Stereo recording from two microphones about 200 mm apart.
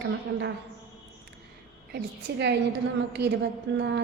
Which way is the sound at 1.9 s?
60° right (ahead or behind).